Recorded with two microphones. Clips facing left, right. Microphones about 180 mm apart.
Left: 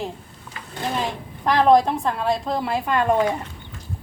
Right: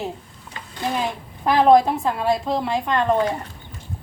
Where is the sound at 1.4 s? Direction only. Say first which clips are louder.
Right 1 dB; 5° right (ahead or behind).